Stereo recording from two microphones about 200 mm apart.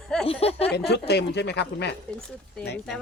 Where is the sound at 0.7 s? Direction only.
55° left (ahead or behind).